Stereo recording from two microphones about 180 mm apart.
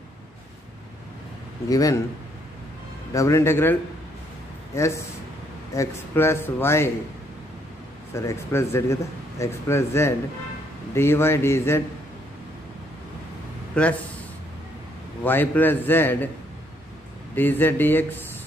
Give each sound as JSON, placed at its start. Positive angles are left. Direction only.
{"t": 1.7, "sound": "a man's voice", "side_deg": 20}
{"t": 3.1, "sound": "speech", "side_deg": 15}
{"t": 4.7, "sound": "speech", "side_deg": 15}
{"t": 8.1, "sound": "speech", "side_deg": 15}
{"t": 13.8, "sound": "a man's voice", "side_deg": 5}
{"t": 15.2, "sound": "speech", "side_deg": 10}
{"t": 17.4, "sound": "speech", "side_deg": 10}